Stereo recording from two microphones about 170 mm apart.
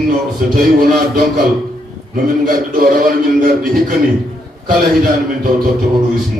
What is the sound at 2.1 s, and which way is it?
A man's voice, 55° right (ahead or behind).